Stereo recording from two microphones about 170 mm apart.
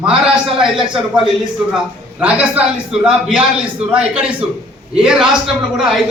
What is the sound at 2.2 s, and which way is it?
Speech, 10° right (ahead or behind).